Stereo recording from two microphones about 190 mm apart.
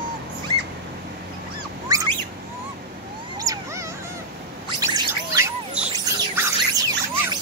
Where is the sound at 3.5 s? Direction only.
20° right (ahead or behind).